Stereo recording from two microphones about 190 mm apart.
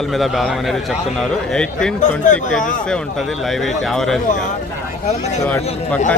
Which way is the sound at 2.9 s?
Centre (ahead or behind).